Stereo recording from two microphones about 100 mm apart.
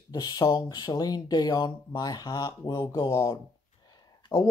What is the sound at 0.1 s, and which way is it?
A man's voice, 45° left (ahead or behind).